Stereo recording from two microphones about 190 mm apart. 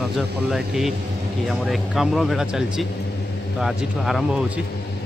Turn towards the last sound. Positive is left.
turn(degrees=0)  # may be behind; listen again after turning